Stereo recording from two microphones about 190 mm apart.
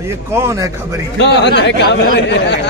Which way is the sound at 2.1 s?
65° left (ahead or behind).